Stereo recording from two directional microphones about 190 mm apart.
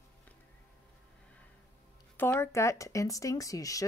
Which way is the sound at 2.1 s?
10° left (ahead or behind).